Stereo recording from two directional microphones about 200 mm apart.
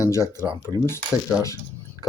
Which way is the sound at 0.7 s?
20° right (ahead or behind).